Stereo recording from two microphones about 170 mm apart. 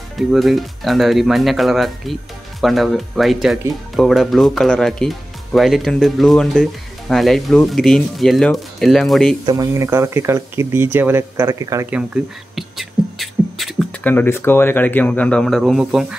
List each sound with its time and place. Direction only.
0.3 s speech: centre (ahead or behind)
9.5 s speech: 20° right (ahead or behind)
11.9 s beatboxing: 5° right (ahead or behind)
14.0 s speech: 10° left (ahead or behind); by 16.2 s 5° right (ahead or behind)